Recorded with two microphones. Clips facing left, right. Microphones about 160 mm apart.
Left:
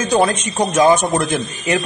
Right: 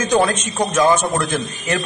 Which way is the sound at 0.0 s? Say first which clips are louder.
Left 1 dB; 10° left (ahead or behind).